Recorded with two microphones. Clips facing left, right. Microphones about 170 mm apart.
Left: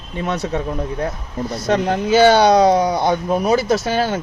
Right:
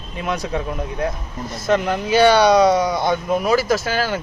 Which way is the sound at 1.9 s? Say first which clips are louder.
Left 3 dB; 30° left (ahead or behind).